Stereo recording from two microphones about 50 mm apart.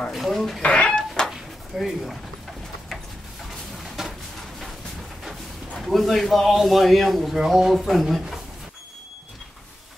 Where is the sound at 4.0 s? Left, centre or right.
Centre.